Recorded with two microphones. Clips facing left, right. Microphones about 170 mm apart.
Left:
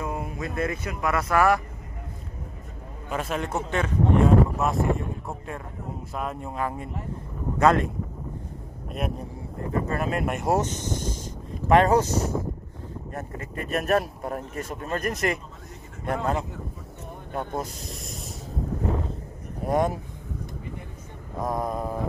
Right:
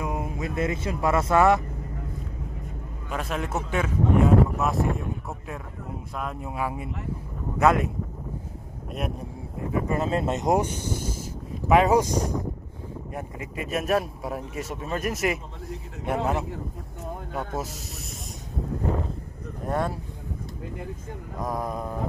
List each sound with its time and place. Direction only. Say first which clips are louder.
0.0 s speech: right 1 dB; 20° right (ahead or behind)
3.1 s speech: left 1 dB; centre (ahead or behind)
6.1 s speech: left 1 dB; centre (ahead or behind)
9.9 s speech: right 2 dB; 25° right (ahead or behind)
13.7 s speech: left 1 dB; centre (ahead or behind)
19.6 s speech: left 4 dB; 15° left (ahead or behind)
21.4 s speech: left 2 dB; centre (ahead or behind)